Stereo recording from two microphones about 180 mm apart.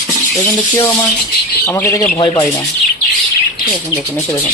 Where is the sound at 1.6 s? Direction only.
15° left (ahead or behind).